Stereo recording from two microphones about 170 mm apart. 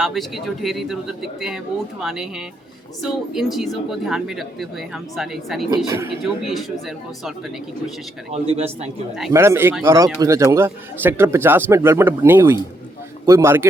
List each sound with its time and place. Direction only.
0.0 s speech: centre (ahead or behind)
5.7 s a man's voice: 15° right (ahead or behind)
6.4 s speech: centre (ahead or behind)
8.3 s a man's voice: 35° right (ahead or behind)
9.3 s a man's voice: 15° right (ahead or behind)